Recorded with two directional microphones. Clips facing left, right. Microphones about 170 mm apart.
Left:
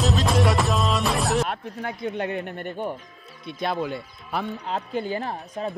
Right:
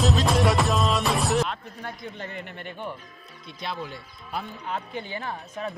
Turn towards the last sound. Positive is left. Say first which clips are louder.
# left 3 dB
turn(degrees=35)  # may be behind; listen again after turning